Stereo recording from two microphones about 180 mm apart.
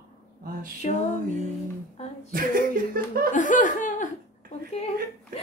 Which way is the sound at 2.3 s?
50° right (ahead or behind).